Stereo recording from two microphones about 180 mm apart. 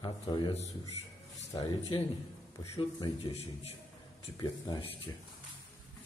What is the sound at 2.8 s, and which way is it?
A man's voice, 25° left (ahead or behind).